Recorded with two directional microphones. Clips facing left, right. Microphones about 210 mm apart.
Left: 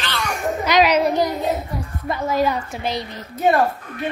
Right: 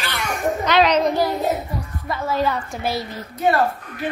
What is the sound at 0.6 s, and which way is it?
A child's voice, 10° left (ahead or behind).